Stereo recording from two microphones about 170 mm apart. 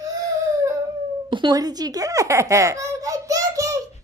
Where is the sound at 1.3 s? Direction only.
25° right (ahead or behind).